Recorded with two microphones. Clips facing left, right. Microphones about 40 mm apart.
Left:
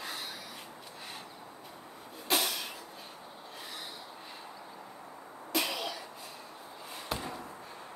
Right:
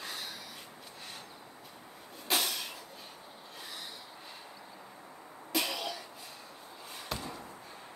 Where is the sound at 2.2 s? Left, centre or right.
Centre.